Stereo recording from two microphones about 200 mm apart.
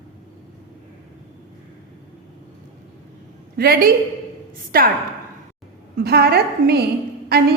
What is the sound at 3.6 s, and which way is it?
A woman's voice, 50° right (ahead or behind).